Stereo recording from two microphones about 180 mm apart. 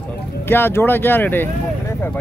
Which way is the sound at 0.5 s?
10° left (ahead or behind).